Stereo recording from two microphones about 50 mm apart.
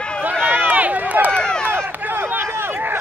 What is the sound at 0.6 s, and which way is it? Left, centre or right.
Run, right.